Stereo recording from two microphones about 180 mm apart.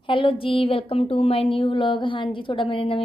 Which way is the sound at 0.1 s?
30° left (ahead or behind).